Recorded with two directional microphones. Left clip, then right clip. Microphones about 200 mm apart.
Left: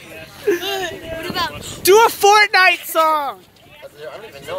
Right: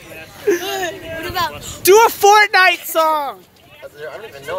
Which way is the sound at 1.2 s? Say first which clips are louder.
Right 2 dB; 65° right (ahead or behind).